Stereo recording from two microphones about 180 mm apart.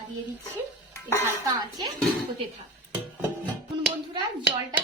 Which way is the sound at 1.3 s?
20° right (ahead or behind).